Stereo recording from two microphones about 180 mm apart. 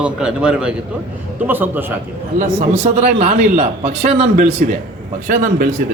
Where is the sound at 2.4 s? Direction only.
40° right (ahead or behind).